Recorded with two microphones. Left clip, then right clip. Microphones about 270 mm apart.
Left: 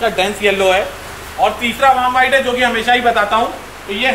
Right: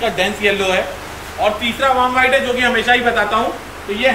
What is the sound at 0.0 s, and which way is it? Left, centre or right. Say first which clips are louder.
A man's voice: left 2 dB; centre.